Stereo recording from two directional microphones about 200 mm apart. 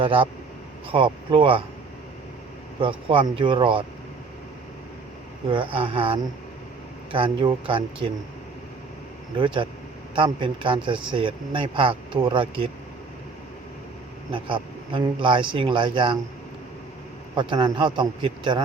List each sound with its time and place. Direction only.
0.0 s a man's voice: 25° right (ahead or behind)
2.8 s a man's voice: 25° right (ahead or behind)
5.5 s a man's voice: 25° right (ahead or behind)
9.4 s a man's voice: 25° right (ahead or behind)
14.3 s a man's voice: 25° right (ahead or behind)
17.3 s a man's voice: 25° right (ahead or behind)